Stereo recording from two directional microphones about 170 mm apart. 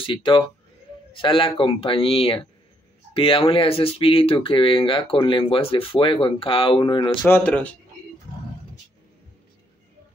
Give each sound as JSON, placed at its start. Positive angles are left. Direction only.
{"t": 0.0, "sound": "a man's voice", "side_deg": 30}
{"t": 7.2, "sound": "speech", "side_deg": 10}